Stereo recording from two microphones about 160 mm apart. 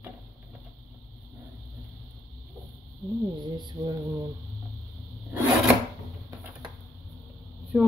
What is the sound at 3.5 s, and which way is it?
Mantra, 30° right (ahead or behind).